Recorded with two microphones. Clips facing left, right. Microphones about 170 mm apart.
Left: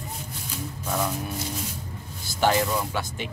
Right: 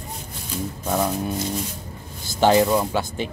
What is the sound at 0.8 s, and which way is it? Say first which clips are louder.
Speech: right 5 dB; 30° right (ahead or behind).